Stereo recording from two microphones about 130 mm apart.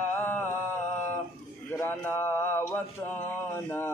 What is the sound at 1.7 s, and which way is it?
Mantra, 15° left (ahead or behind).